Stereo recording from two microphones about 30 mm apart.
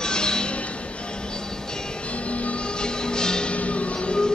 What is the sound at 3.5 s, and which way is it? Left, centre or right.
Music, left.